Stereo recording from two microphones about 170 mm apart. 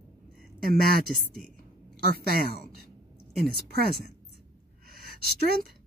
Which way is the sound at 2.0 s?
65° right (ahead or behind).